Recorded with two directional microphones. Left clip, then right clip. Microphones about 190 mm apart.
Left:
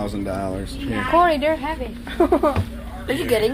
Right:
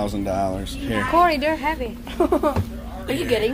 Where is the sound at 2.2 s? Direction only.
30° left (ahead or behind).